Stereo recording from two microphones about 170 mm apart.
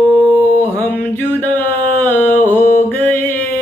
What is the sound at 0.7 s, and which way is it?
Mantra, 10° left (ahead or behind).